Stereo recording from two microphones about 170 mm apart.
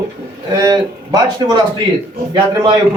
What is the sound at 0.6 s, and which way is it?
Speech, 20° right (ahead or behind).